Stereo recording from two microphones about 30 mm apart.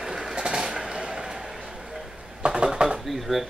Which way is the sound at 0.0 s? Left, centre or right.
Centre.